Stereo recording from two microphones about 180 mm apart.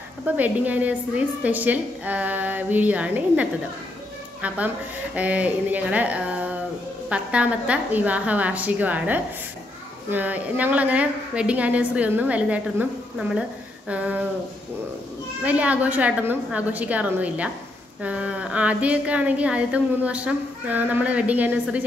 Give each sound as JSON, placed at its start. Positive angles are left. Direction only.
{"t": 0.2, "sound": "a woman's voice", "side_deg": -10}
{"t": 15.4, "sound": "a woman's voice", "side_deg": -10}